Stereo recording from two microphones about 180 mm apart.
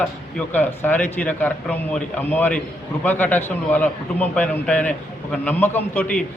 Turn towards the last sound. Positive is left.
turn(degrees=10)  # may be behind; listen again after turning